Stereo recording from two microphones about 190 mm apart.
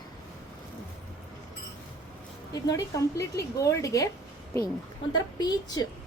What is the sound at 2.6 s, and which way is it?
A woman's voice, 20° left (ahead or behind).